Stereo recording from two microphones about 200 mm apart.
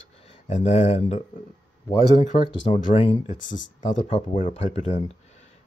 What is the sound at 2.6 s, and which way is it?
Speech, 35° left (ahead or behind).